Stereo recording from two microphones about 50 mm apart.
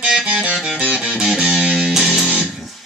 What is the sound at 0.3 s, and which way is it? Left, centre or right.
Music, right.